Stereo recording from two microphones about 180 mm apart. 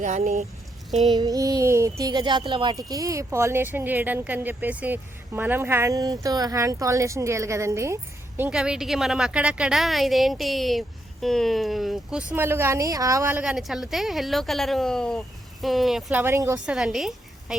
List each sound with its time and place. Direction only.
0.0 s speech: 45° right (ahead or behind)
1.1 s speech: 20° right (ahead or behind)
8.4 s a woman's voice: 5° right (ahead or behind)
16.6 s speech: 5° right (ahead or behind)